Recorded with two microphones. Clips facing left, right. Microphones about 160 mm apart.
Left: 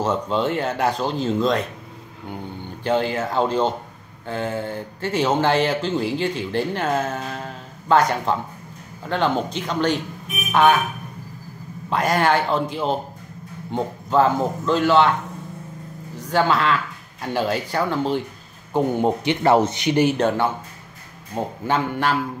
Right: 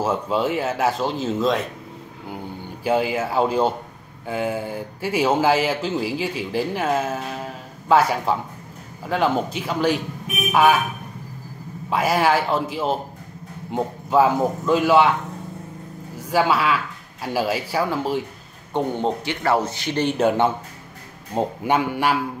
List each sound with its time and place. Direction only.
0.0 s speech: 5° right (ahead or behind)
2.8 s a man's voice: 10° right (ahead or behind)
11.9 s a man's voice: 5° right (ahead or behind)
16.2 s speech: 10° right (ahead or behind)
18.7 s speech: 10° left (ahead or behind)
19.2 s speech: 20° left (ahead or behind)
21.4 s a man's voice: 10° right (ahead or behind)